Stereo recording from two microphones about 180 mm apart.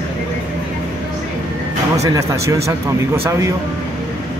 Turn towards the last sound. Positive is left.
turn(degrees=-15)  # may be behind; listen again after turning